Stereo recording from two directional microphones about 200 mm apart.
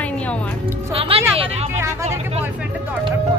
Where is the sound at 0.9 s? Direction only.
30° right (ahead or behind).